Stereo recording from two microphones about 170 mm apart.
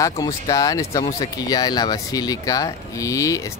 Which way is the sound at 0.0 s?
20° left (ahead or behind).